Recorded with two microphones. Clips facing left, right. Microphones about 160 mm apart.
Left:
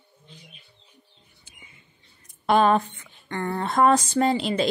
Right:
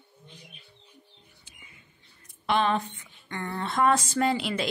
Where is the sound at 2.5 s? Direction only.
45° left (ahead or behind).